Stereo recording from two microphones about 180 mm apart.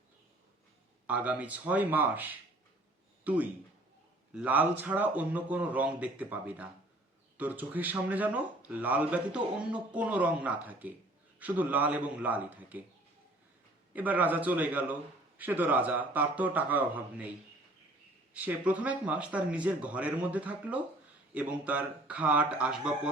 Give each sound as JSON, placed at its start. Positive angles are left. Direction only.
{"t": 1.0, "sound": "speech", "side_deg": -10}
{"t": 13.9, "sound": "speech", "side_deg": -10}
{"t": 18.3, "sound": "speech", "side_deg": -10}